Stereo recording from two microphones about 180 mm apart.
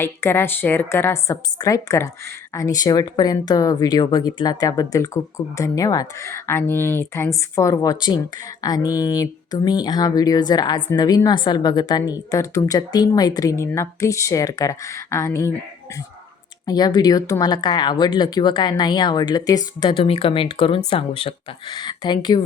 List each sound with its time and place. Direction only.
0.0 s a woman's voice: 10° left (ahead or behind)
16.6 s speech: 20° left (ahead or behind)